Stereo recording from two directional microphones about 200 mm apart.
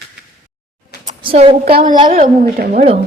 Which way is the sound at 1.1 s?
30° right (ahead or behind).